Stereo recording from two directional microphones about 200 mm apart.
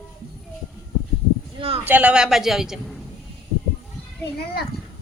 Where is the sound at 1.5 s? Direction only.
30° right (ahead or behind).